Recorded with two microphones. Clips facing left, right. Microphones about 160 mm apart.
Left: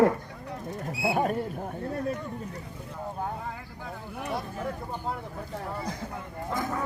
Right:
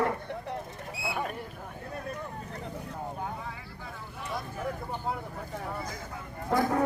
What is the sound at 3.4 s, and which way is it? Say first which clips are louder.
Vehicle: left 3 dB; 55° left (ahead or behind).